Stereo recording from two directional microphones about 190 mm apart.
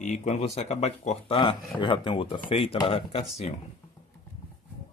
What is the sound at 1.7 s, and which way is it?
Speech, 25° left (ahead or behind).